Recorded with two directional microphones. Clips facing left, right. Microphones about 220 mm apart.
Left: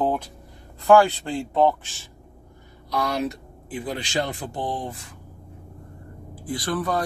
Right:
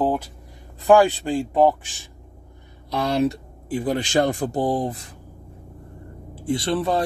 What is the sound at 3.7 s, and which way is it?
Speech, 45° right (ahead or behind).